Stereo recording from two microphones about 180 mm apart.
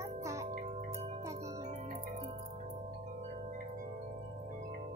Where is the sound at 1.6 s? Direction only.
40° right (ahead or behind).